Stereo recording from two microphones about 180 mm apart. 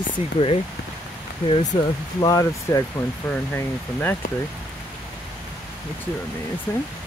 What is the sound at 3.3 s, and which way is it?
Speech, 10° left (ahead or behind).